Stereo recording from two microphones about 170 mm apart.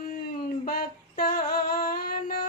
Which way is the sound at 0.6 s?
60° left (ahead or behind).